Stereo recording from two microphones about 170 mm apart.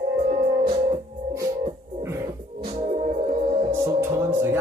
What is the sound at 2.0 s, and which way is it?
Music, 15° right (ahead or behind).